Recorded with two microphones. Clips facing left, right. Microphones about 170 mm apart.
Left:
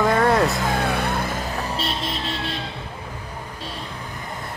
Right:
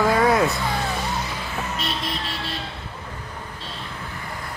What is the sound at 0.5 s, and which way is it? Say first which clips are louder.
Music: left 3 dB; 50° left (ahead or behind).